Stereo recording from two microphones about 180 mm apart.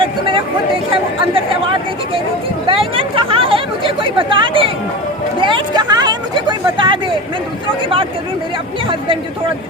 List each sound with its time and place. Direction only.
0.0 s chatter: 30° right (ahead or behind)
2.6 s chatter: 30° right (ahead or behind)
5.4 s a sound: 25° right (ahead or behind)